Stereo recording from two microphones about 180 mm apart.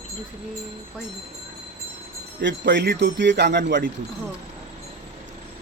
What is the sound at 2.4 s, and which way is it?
Speech, 75° right (ahead or behind).